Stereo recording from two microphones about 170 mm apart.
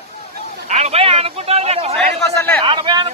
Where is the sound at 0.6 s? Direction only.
40° right (ahead or behind).